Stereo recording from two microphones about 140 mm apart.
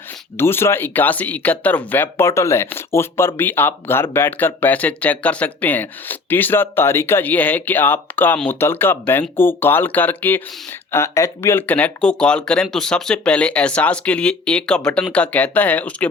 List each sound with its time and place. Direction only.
0.3 s speech: 15° left (ahead or behind)